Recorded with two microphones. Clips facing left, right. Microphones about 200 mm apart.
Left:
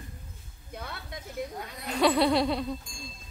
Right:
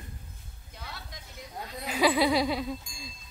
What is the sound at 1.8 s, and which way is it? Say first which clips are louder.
Music: left 1 dB; centre (ahead or behind).